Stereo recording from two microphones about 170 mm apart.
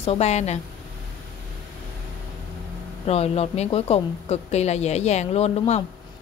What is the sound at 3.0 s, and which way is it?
Speech, 35° left (ahead or behind).